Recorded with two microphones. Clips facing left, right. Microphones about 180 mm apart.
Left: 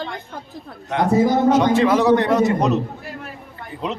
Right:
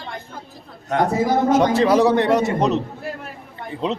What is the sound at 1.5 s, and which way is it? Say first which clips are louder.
A man's voice: even; 35° right (ahead or behind).